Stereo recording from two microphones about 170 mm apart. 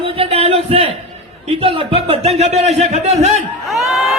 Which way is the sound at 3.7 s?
Centre (ahead or behind).